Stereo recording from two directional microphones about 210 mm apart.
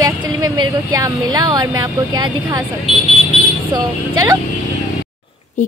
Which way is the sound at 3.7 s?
15° right (ahead or behind).